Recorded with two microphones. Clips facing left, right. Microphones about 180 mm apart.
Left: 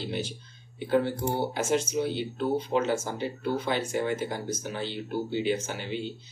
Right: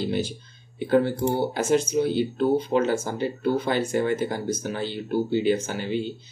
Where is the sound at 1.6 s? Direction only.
35° right (ahead or behind).